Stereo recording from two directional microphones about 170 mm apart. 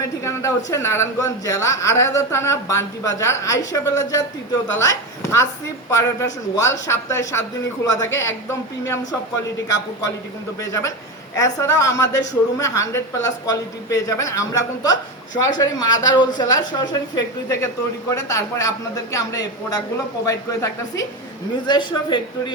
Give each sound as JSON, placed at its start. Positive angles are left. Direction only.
{"t": 0.0, "sound": "a man's voice", "side_deg": 15}
{"t": 10.6, "sound": "a woman's voice", "side_deg": 20}